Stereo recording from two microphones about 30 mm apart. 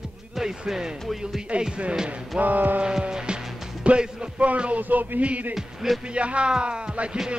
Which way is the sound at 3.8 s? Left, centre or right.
Right.